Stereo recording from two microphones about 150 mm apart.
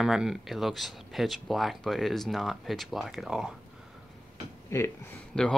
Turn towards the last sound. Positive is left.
turn(degrees=5)  # may be behind; listen again after turning